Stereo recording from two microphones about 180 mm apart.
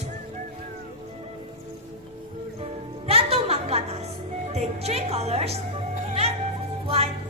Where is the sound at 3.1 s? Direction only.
30° right (ahead or behind).